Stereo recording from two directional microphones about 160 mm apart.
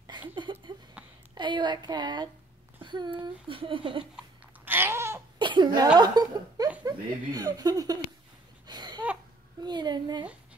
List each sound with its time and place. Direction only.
0.3 s a sound: 30° right (ahead or behind)
1.3 s speech: 30° right (ahead or behind)
4.6 s babbling: 15° right (ahead or behind)
5.4 s chuckle: 30° right (ahead or behind)
5.9 s speech: 25° right (ahead or behind)
8.6 s a sound: 25° right (ahead or behind)
9.6 s speech: 25° right (ahead or behind)